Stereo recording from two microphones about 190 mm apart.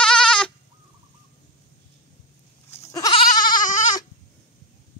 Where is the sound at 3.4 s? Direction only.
45° left (ahead or behind).